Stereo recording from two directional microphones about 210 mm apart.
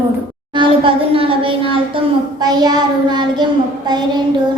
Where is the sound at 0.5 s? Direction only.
25° right (ahead or behind).